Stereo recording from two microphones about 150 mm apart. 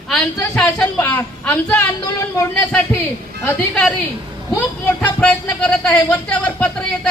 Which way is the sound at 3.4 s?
10° left (ahead or behind).